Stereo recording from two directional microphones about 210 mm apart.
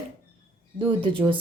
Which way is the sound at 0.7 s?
25° right (ahead or behind).